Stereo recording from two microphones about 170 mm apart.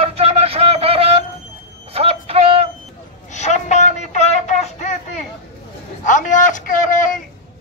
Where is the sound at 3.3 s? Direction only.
45° left (ahead or behind).